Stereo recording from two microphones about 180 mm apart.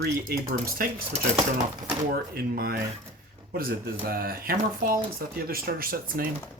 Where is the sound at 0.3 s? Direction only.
55° right (ahead or behind).